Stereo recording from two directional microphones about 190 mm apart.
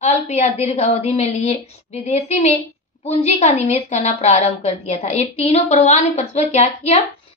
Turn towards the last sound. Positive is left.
turn(degrees=35)  # may be behind; listen again after turning